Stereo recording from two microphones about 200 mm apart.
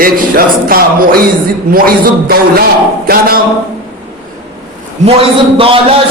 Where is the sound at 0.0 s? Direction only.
45° right (ahead or behind).